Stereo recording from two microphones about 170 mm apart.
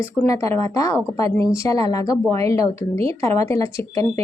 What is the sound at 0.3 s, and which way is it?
Speech, 20° left (ahead or behind).